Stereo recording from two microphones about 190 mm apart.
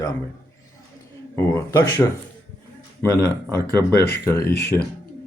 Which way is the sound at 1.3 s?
15° left (ahead or behind).